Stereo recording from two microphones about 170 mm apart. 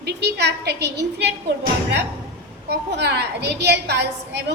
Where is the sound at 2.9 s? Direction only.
80° right.